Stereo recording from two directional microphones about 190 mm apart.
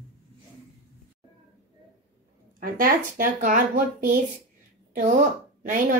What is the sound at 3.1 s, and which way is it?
A woman's voice, 45° right (ahead or behind).